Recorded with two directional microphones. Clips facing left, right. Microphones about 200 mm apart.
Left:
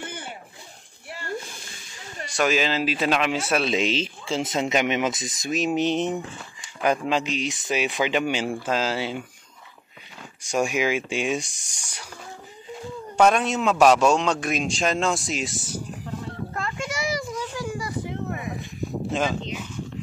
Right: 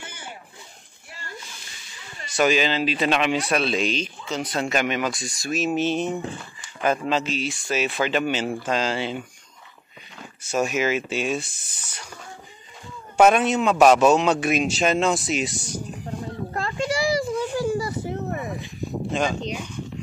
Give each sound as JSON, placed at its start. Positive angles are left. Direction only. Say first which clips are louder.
{"t": 0.0, "sound": "a sound", "louder": "left 4 dB", "side_deg": 55}
{"t": 2.3, "sound": "a man's voice", "louder": "right 2 dB", "side_deg": 0}
{"t": 3.6, "sound": "speech", "louder": "left 1 dB", "side_deg": 20}
{"t": 10.4, "sound": "speech", "louder": "even", "side_deg": 10}
{"t": 13.2, "sound": "a man's voice", "louder": "right 2 dB", "side_deg": -5}
{"t": 16.5, "sound": "a sound", "louder": "right 7 dB", "side_deg": -30}
{"t": 19.1, "sound": "a man's voice", "louder": "right 1 dB", "side_deg": 0}